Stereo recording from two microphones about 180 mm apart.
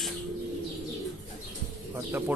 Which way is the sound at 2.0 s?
10° right (ahead or behind).